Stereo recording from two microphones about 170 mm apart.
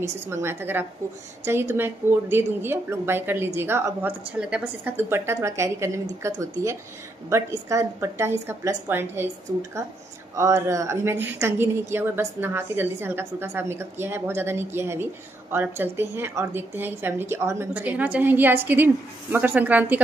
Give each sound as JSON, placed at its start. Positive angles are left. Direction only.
{"t": 0.0, "sound": "a woman's voice", "side_deg": -15}